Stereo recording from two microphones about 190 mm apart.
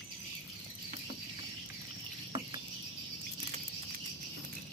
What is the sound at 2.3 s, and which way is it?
Cricket, 25° right (ahead or behind).